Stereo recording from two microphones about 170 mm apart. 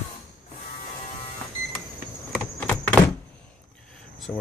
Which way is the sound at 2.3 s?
10° left (ahead or behind).